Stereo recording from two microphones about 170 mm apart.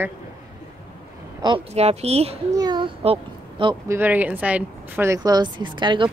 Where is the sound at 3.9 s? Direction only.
10° right (ahead or behind); by 6.0 s 25° right (ahead or behind).